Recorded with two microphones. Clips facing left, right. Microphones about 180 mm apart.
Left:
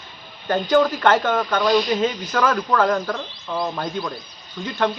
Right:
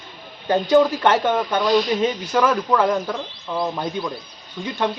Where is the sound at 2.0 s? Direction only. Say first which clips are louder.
Right 1 dB; 20° right (ahead or behind).